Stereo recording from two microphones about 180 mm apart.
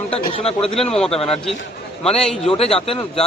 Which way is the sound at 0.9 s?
5° left (ahead or behind).